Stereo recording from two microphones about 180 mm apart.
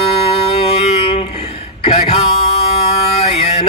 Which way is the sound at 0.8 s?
35° left (ahead or behind).